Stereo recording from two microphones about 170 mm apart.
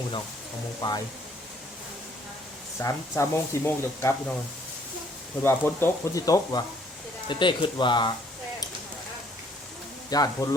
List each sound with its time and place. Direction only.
0.8 s speech: 20° left (ahead or behind)
2.7 s speech: 15° left (ahead or behind)
5.4 s speech: 15° left (ahead or behind)
10.1 s speech: 20° left (ahead or behind)